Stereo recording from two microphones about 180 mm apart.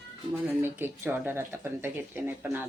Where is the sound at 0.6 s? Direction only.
10° right (ahead or behind).